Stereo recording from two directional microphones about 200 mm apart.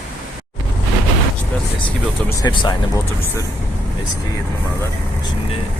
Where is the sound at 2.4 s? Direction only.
20° left (ahead or behind).